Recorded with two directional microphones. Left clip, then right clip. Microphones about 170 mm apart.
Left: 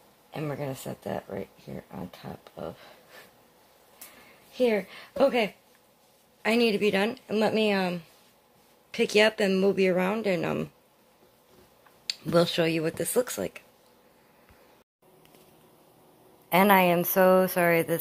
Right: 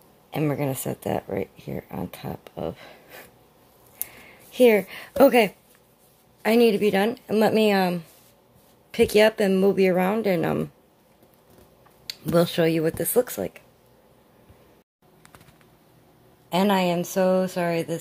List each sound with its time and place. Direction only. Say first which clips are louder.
0.3 s speech: right 8 dB; 40° right (ahead or behind)
4.6 s speech: right 8 dB; 40° right (ahead or behind)
6.4 s speech: right 5 dB; 20° right (ahead or behind)
12.1 s speech: right 2 dB; 10° right (ahead or behind)
16.4 s a woman's voice: left 2 dB; 5° left (ahead or behind)